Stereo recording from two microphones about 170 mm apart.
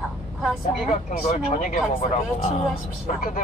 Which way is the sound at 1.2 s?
50° left (ahead or behind).